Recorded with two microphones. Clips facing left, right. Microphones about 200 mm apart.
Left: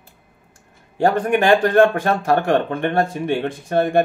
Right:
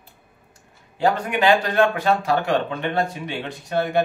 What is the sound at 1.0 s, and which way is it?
Speech, 50° left (ahead or behind).